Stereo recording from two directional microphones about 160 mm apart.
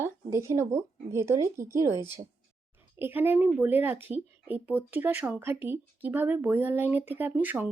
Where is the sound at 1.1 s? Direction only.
20° right (ahead or behind).